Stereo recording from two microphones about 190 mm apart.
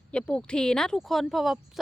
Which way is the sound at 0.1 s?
5° left (ahead or behind).